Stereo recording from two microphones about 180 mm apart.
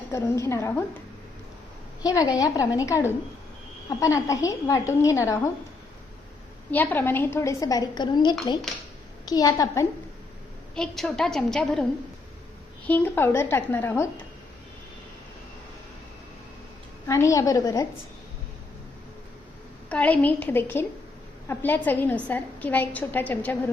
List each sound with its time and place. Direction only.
0.1 s a woman's voice: 15° left (ahead or behind)
2.0 s a woman's voice: 20° left (ahead or behind)
6.7 s a woman's voice: 10° left (ahead or behind)
10.8 s a woman's voice: centre (ahead or behind)
12.9 s a woman's voice: 10° left (ahead or behind)
17.1 s a woman's voice: 15° left (ahead or behind)
19.9 s a woman's voice: 10° left (ahead or behind)